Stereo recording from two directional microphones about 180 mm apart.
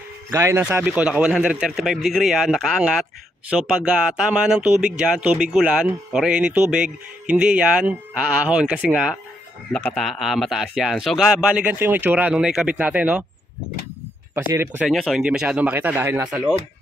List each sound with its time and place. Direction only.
0.3 s speech: 15° right (ahead or behind)
14.3 s speech: 15° right (ahead or behind)
14.9 s speech: centre (ahead or behind)